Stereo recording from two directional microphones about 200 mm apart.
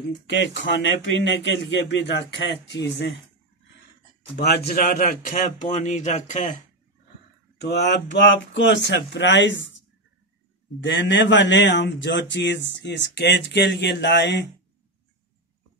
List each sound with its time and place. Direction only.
0.3 s speech: 65° left (ahead or behind)
4.4 s speech: 50° left (ahead or behind)
7.7 s speech: 60° left (ahead or behind)